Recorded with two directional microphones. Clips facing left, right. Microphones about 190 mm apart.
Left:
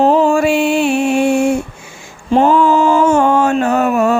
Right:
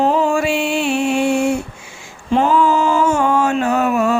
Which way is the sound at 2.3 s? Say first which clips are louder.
Left 4 dB; 40° left (ahead or behind).